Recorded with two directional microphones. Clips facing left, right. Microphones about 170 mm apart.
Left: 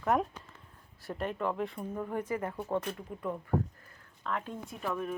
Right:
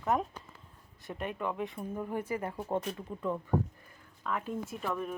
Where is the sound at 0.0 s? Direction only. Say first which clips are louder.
Left 2 dB; centre (ahead or behind).